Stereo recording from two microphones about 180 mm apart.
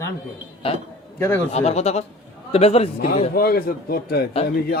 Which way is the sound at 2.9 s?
55° left (ahead or behind).